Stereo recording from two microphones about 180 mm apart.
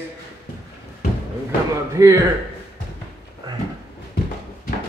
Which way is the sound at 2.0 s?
20° right (ahead or behind).